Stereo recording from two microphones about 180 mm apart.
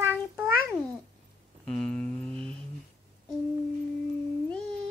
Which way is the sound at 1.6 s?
5° left (ahead or behind).